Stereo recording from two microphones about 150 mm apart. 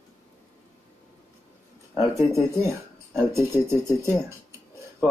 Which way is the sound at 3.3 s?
15° right (ahead or behind).